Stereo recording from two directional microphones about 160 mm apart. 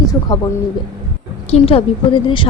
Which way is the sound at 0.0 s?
25° left (ahead or behind).